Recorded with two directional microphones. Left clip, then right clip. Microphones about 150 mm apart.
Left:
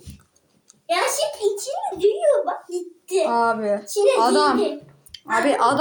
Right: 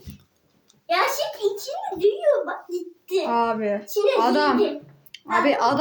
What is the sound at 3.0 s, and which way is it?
A woman's voice, 5° right (ahead or behind).